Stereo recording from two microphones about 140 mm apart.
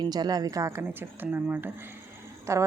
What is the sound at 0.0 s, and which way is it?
Speech, 30° right (ahead or behind).